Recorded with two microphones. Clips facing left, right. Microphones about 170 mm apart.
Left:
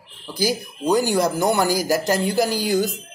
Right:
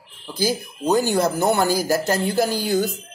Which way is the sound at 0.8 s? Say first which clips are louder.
Even; 20° right (ahead or behind).